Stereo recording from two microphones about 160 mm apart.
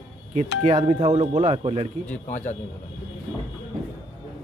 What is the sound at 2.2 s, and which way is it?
Speech, 50° left (ahead or behind).